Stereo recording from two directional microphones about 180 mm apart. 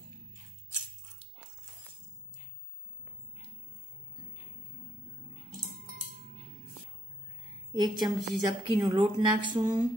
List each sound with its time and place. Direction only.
7.7 s a woman's voice: 25° right (ahead or behind)